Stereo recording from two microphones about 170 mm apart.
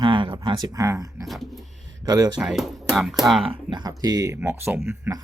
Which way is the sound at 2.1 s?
25° right (ahead or behind).